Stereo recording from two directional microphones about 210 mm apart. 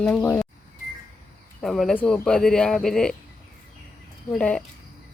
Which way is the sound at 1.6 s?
Centre (ahead or behind).